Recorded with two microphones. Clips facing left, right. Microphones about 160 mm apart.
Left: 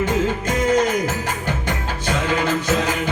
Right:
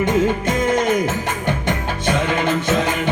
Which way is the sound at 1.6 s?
20° right (ahead or behind).